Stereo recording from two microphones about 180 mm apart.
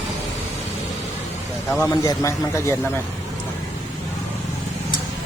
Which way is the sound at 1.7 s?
15° left (ahead or behind).